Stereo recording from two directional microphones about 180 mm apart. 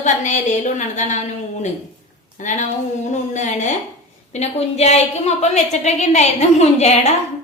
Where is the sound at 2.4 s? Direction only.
45° left (ahead or behind).